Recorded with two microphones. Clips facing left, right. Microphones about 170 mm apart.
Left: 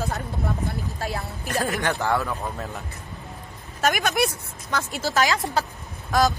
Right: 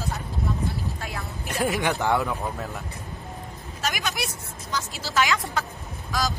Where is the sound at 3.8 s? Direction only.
55° left (ahead or behind).